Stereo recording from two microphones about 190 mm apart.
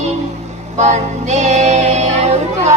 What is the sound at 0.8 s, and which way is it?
Music, 35° right (ahead or behind).